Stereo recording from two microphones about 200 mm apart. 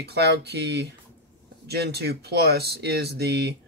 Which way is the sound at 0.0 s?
55° right (ahead or behind).